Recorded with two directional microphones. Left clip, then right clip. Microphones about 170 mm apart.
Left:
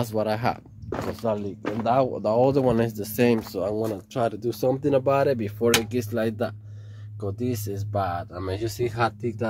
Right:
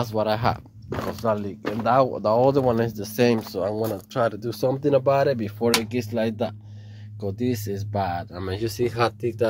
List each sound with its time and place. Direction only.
0.0 s speech: 10° left (ahead or behind)
2.6 s speech: 20° left (ahead or behind)
3.2 s speech: 5° left (ahead or behind)
7.2 s speech: centre (ahead or behind)